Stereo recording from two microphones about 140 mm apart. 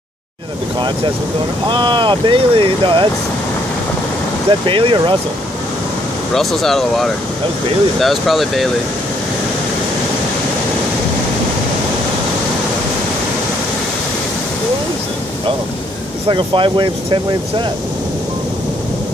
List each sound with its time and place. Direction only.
1.7 s speech: 35° right (ahead or behind)
4.5 s speech: 35° right (ahead or behind)
6.3 s speech: centre (ahead or behind)
16.3 s speech: 35° right (ahead or behind)